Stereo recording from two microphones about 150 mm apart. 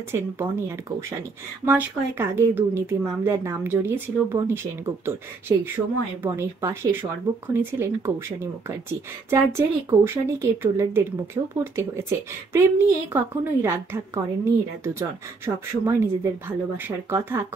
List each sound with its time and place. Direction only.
0.1 s speech: 15° right (ahead or behind)